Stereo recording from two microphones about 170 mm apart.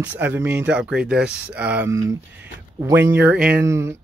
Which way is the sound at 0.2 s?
10° right (ahead or behind).